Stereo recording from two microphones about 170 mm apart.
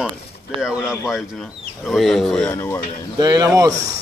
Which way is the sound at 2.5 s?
15° left (ahead or behind).